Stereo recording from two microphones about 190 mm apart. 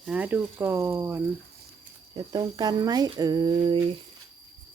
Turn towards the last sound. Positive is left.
turn(degrees=-25)  # may be behind; listen again after turning